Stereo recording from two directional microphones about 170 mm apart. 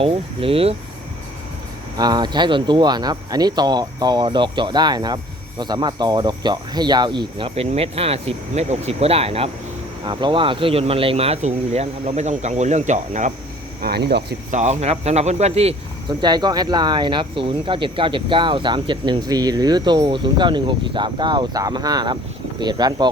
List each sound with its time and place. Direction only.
0.0 s speech: 35° right (ahead or behind)
2.0 s speech: 25° right (ahead or behind); by 13.3 s 45° right (ahead or behind)
13.8 s speech: 70° right (ahead or behind)
14.5 s speech: 40° right (ahead or behind)
16.0 s speech: 25° right (ahead or behind)